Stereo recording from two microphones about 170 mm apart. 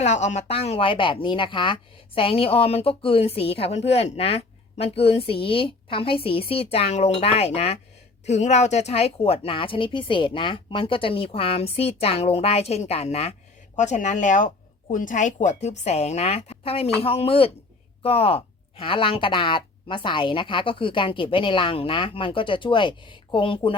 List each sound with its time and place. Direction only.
0.0 s a woman's voice: 40° left (ahead or behind)